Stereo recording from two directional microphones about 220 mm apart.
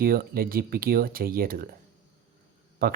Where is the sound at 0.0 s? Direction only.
40° right (ahead or behind).